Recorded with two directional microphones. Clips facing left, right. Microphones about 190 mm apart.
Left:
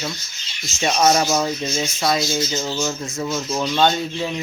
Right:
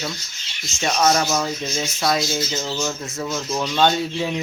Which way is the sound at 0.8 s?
15° left (ahead or behind).